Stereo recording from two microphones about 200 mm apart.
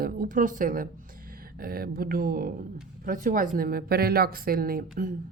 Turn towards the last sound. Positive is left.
turn(degrees=-45)  # may be behind; listen again after turning